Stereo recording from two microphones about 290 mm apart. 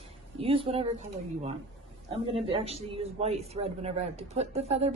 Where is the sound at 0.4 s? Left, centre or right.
Centre.